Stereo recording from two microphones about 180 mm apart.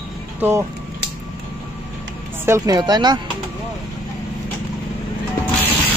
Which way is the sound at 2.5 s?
20° right (ahead or behind).